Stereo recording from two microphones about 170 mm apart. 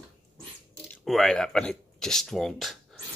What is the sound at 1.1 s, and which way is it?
Speech, centre (ahead or behind).